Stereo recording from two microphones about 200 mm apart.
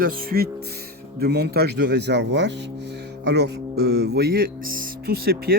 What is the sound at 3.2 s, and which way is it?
Music, 60° right (ahead or behind).